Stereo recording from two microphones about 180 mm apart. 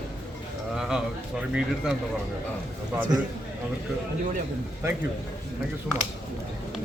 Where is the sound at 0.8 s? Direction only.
5° right (ahead or behind).